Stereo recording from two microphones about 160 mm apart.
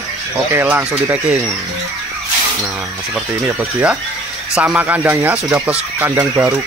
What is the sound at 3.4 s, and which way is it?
Speech, 10° right (ahead or behind).